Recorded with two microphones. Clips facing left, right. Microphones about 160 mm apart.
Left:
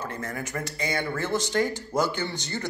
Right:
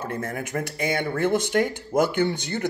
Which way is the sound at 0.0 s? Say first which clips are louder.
Right 4 dB; 55° right (ahead or behind).